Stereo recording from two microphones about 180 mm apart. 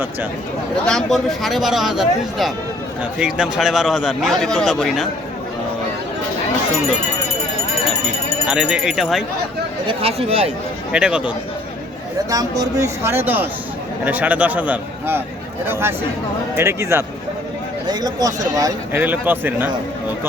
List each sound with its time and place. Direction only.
0.9 s a man's voice: 5° left (ahead or behind)
8.4 s a man's voice: 5° right (ahead or behind)
9.8 s speech: 35° right (ahead or behind)
10.9 s a man's voice: 5° right (ahead or behind)
12.3 s speech: 20° right (ahead or behind)